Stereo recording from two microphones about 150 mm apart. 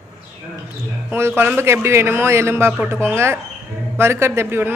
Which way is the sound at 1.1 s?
15° right (ahead or behind).